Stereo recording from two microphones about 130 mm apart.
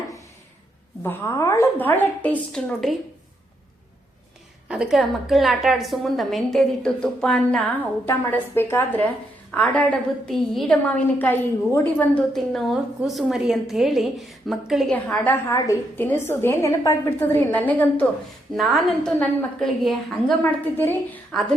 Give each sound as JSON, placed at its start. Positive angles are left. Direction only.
{"t": 1.0, "sound": "a woman's voice", "side_deg": 20}
{"t": 4.7, "sound": "a woman's voice", "side_deg": -5}
{"t": 8.0, "sound": "a woman's voice", "side_deg": 15}
{"t": 13.0, "sound": "a woman's voice", "side_deg": 0}
{"t": 15.5, "sound": "a woman's voice", "side_deg": 25}
{"t": 18.5, "sound": "a woman's voice", "side_deg": 0}
{"t": 20.4, "sound": "a woman's voice", "side_deg": 15}